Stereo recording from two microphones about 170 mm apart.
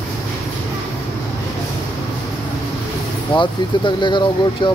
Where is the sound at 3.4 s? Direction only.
25° left (ahead or behind).